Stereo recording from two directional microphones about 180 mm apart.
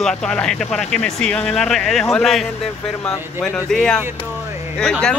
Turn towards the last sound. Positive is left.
turn(degrees=5)  # may be behind; listen again after turning